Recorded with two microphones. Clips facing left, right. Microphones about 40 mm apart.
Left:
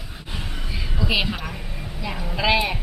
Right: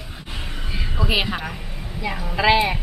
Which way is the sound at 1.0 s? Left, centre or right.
Centre.